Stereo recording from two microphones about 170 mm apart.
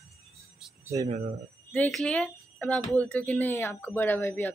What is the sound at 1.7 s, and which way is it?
A woman's voice, 5° left (ahead or behind).